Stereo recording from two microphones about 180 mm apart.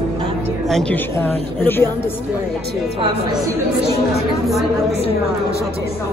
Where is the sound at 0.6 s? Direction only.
5° left (ahead or behind).